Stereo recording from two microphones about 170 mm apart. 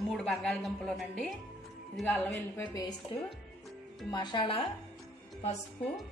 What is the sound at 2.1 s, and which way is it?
Speech, 15° left (ahead or behind).